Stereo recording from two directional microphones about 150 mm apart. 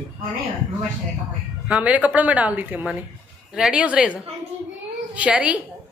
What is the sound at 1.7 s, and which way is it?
A woman's voice, 10° right (ahead or behind).